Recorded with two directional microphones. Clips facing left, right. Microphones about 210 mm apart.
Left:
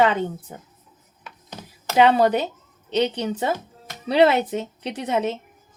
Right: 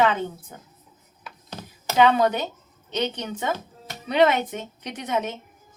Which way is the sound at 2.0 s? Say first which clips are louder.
Left 2 dB; 35° left (ahead or behind).